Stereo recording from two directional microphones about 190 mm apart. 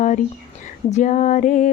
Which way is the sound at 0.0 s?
40° left (ahead or behind).